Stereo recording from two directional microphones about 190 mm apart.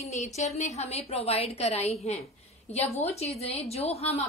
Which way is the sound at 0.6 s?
35° left (ahead or behind).